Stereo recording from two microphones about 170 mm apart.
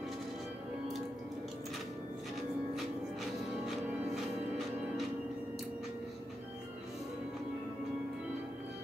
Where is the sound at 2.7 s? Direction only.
Centre (ahead or behind).